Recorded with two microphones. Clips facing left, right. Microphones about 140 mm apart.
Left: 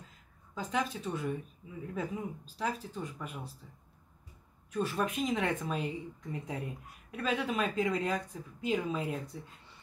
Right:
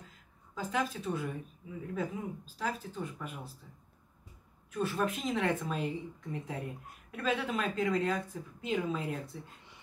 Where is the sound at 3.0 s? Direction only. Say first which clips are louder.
Even; centre (ahead or behind).